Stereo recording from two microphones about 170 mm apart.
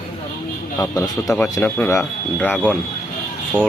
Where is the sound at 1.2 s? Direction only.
Centre (ahead or behind).